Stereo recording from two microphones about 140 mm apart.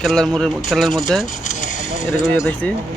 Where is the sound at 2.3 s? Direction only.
10° left (ahead or behind).